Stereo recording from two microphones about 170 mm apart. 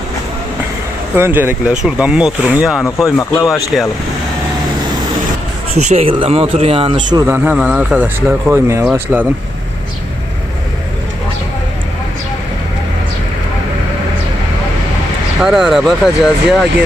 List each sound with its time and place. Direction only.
1.1 s speech: 10° right (ahead or behind)
2.8 s speech: 15° left (ahead or behind)
3.7 s speech: centre (ahead or behind)
5.7 s speech: 40° right (ahead or behind); by 9.2 s 15° right (ahead or behind)
15.4 s speech: 5° right (ahead or behind)